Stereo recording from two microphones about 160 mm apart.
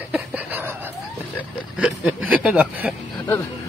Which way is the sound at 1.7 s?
5° right (ahead or behind).